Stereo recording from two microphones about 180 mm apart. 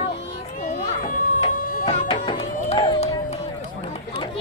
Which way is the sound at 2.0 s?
30° left (ahead or behind).